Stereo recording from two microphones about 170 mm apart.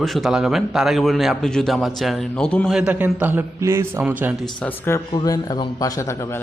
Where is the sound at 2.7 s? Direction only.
10° right (ahead or behind).